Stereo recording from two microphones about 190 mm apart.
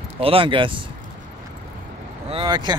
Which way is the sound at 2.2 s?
25° right (ahead or behind).